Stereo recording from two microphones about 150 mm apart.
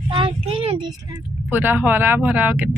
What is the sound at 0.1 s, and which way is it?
Child singing, 35° right (ahead or behind).